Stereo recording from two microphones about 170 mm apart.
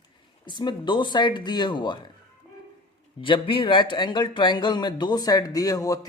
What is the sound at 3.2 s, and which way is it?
A man's voice, 30° left (ahead or behind).